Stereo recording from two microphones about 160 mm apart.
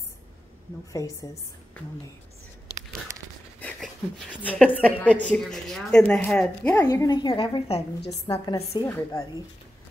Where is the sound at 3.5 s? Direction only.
10° left (ahead or behind).